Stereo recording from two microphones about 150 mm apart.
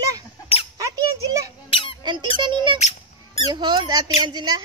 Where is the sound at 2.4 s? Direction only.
30° right (ahead or behind).